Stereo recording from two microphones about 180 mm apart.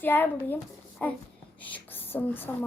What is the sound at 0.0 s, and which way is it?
A child's voice, 10° left (ahead or behind).